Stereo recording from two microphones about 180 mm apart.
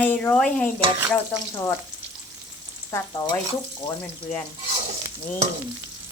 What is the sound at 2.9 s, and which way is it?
Speech, 20° left (ahead or behind).